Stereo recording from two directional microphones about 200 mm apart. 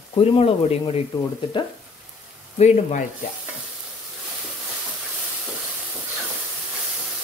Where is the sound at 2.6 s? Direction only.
35° left (ahead or behind).